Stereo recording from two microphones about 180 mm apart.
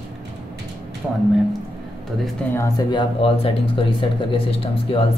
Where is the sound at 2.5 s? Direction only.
20° left (ahead or behind).